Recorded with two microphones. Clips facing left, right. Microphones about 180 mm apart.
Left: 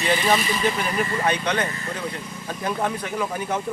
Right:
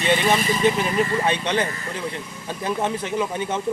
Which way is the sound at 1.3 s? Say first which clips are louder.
Right 1 dB; 25° right (ahead or behind).